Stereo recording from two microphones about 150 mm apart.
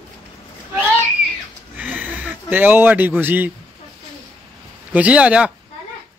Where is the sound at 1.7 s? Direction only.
10° right (ahead or behind).